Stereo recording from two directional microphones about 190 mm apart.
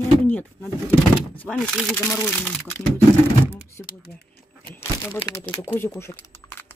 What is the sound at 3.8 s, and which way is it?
Typing, 5° left (ahead or behind).